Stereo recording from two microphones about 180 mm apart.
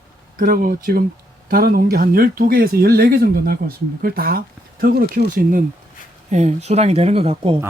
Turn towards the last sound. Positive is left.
turn(degrees=-35)  # may be behind; listen again after turning